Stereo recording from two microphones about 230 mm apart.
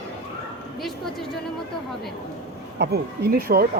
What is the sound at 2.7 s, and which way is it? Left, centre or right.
Speech, right.